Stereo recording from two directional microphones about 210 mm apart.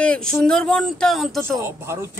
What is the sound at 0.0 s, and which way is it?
Speech, 5° left (ahead or behind).